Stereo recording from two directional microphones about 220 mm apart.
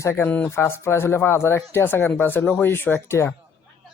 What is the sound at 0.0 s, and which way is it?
Speech, 10° left (ahead or behind).